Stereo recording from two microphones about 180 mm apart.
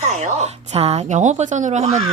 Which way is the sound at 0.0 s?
40° right (ahead or behind).